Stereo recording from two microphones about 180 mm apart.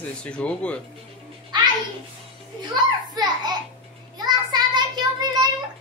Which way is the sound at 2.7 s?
25° right (ahead or behind).